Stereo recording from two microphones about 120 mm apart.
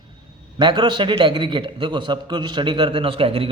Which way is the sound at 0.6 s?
40° right (ahead or behind).